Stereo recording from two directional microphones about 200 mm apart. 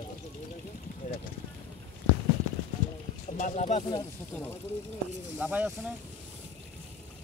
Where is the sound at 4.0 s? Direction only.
10° left (ahead or behind).